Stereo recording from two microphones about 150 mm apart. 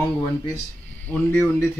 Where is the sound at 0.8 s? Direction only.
10° left (ahead or behind).